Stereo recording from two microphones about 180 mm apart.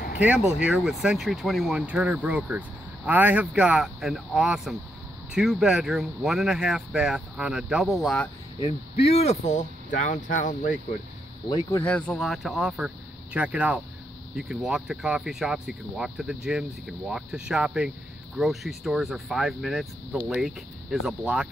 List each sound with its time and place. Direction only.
0.2 s speech: 5° right (ahead or behind)
8.6 s speech: 35° left (ahead or behind)
11.4 s speech: 20° left (ahead or behind)
11.8 s speech: 5° left (ahead or behind)